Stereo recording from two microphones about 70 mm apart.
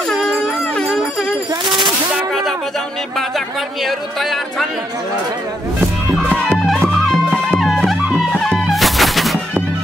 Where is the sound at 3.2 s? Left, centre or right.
Centre.